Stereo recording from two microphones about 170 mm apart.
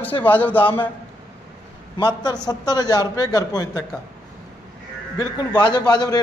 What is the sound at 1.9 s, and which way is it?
A man's voice, 25° left (ahead or behind).